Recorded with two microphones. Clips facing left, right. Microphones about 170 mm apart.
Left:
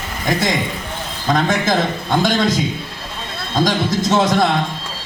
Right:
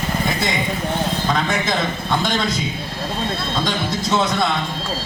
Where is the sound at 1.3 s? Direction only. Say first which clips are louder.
Left 9 dB; 40° left (ahead or behind).